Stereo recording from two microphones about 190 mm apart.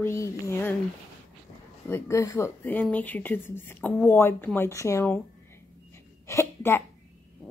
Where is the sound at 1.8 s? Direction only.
15° left (ahead or behind).